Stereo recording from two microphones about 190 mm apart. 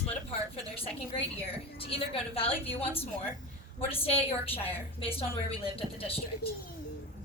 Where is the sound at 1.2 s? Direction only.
30° left (ahead or behind).